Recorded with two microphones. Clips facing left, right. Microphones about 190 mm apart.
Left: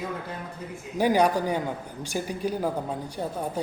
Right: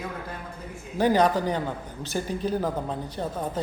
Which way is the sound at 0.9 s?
10° left (ahead or behind).